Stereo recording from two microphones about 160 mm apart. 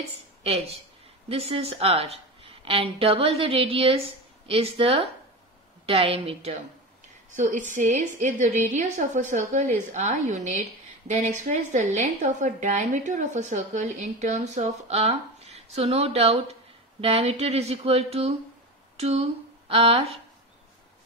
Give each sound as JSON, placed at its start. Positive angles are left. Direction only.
{"t": 0.4, "sound": "a woman's voice", "side_deg": -40}
{"t": 7.3, "sound": "a woman's voice", "side_deg": -55}